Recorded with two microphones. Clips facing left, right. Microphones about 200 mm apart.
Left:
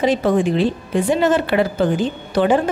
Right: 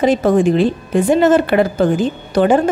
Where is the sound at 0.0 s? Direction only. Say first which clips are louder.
Right 4 dB; 45° right (ahead or behind).